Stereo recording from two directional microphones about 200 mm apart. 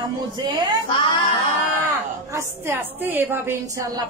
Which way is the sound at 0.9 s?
25° left (ahead or behind).